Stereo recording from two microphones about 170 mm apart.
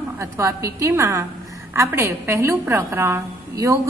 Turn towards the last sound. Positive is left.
turn(degrees=-20)  # may be behind; listen again after turning